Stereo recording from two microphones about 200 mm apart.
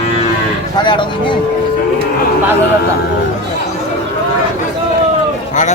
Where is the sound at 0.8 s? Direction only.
25° left (ahead or behind).